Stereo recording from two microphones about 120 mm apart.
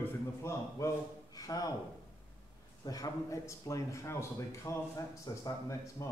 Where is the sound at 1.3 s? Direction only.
30° left (ahead or behind).